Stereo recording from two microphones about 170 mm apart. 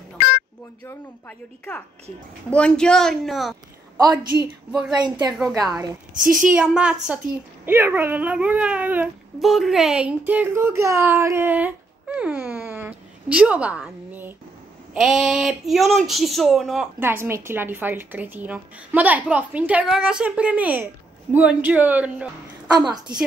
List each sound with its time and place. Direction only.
0.8 s a woman's voice: 10° left (ahead or behind); by 4.9 s 5° right (ahead or behind)
5.0 s a woman's voice: 25° right (ahead or behind)
6.4 s speech: 5° right (ahead or behind)
17.0 s a woman's voice: 15° right (ahead or behind)
22.8 s a woman's voice: 25° right (ahead or behind)